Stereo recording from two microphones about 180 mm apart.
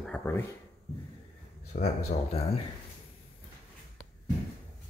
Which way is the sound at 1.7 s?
35° left (ahead or behind).